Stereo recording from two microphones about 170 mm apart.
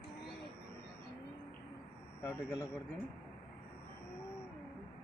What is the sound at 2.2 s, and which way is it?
Vehicle, 15° left (ahead or behind).